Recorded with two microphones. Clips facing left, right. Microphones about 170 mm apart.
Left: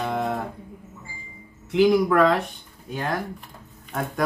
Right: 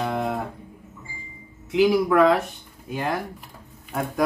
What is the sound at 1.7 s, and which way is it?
Speech, 5° right (ahead or behind).